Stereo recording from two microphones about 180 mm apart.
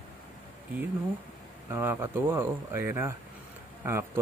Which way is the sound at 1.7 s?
10° right (ahead or behind).